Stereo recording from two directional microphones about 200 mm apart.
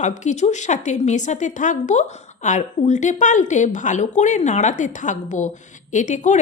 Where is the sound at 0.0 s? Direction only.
35° left (ahead or behind).